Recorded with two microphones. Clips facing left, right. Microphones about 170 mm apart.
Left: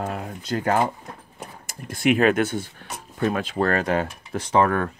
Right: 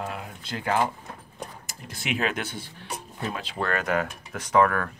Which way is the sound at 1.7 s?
50° left (ahead or behind).